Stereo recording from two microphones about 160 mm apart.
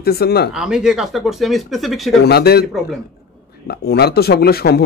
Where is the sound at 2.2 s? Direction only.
85° left.